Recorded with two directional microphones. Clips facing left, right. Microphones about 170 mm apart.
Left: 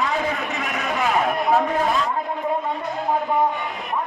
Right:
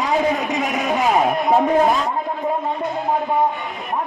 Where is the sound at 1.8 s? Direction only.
40° right (ahead or behind).